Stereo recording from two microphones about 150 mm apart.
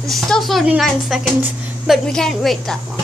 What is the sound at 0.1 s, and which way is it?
A woman's voice, centre (ahead or behind).